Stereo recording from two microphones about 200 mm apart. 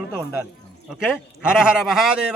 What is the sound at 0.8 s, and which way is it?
Speech, 5° right (ahead or behind).